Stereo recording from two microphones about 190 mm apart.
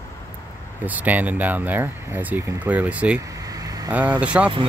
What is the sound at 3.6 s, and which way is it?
Vehicle, 20° right (ahead or behind).